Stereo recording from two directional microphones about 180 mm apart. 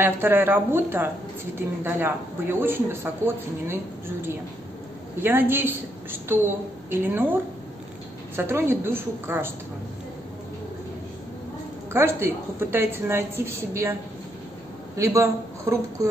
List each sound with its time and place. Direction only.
0.0 s a woman's voice: 10° right (ahead or behind)
5.2 s a woman's voice: 10° right (ahead or behind)
8.4 s a woman's voice: 15° right (ahead or behind)
11.9 s a woman's voice: 15° right (ahead or behind)
15.0 s a woman's voice: 15° right (ahead or behind)